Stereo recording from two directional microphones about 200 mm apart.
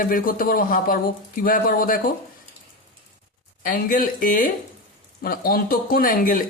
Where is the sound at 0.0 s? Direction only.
45° left (ahead or behind).